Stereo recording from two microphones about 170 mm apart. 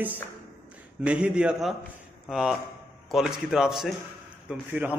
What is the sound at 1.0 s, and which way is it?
A man's voice, 5° right (ahead or behind).